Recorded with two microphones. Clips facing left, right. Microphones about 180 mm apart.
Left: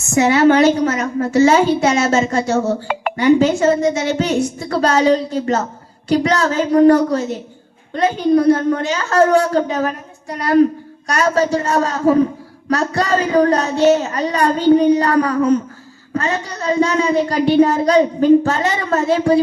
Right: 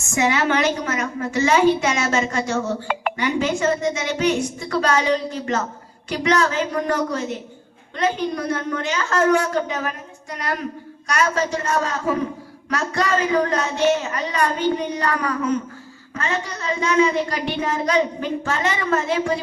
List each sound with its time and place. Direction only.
0.1 s speech: 35° left (ahead or behind)
2.8 s speech: 5° left (ahead or behind)
3.2 s speech: 35° left (ahead or behind)